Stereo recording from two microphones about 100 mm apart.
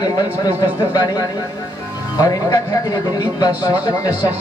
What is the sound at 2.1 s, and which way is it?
Speech, 35° left (ahead or behind).